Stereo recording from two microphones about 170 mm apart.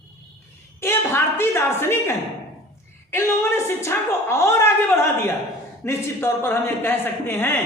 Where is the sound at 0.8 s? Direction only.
15° left (ahead or behind).